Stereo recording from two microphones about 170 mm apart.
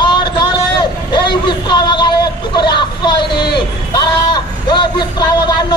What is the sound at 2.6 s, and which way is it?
Vehicle, 25° left (ahead or behind).